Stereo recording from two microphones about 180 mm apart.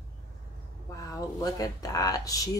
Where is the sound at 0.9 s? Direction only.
20° left (ahead or behind).